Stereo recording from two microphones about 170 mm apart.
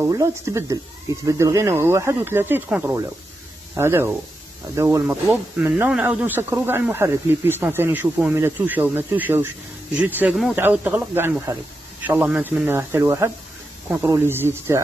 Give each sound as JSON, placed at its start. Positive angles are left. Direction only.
{"t": 0.0, "sound": "speech", "side_deg": -20}